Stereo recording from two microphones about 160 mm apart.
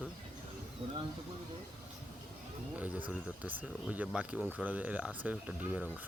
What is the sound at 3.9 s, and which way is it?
Speech, 10° right (ahead or behind).